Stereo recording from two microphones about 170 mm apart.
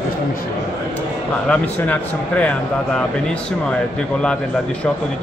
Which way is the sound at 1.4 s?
10° left (ahead or behind).